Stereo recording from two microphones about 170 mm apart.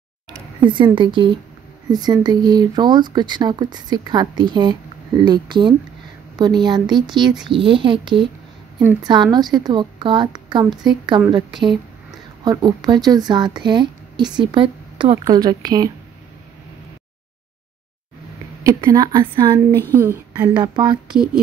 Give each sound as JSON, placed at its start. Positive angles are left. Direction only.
{"t": 0.7, "sound": "speech", "side_deg": -30}
{"t": 12.4, "sound": "speech", "side_deg": -25}
{"t": 18.6, "sound": "speech", "side_deg": -20}
{"t": 20.0, "sound": "a woman's voice", "side_deg": -10}
{"t": 20.4, "sound": "speech", "side_deg": -25}